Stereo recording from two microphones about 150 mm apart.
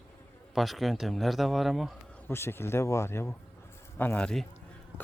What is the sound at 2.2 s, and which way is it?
Speech, 15° left (ahead or behind).